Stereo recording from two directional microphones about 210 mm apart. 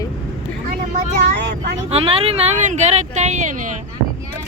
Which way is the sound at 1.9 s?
25° right (ahead or behind).